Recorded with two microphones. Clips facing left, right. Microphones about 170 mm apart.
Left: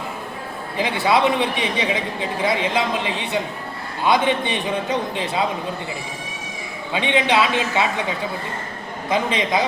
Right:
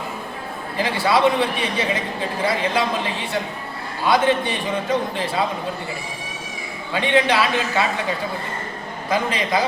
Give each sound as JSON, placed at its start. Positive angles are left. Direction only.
{"t": 0.8, "sound": "a man's voice", "side_deg": 20}
{"t": 6.9, "sound": "a man's voice", "side_deg": 20}
{"t": 9.0, "sound": "a man's voice", "side_deg": 20}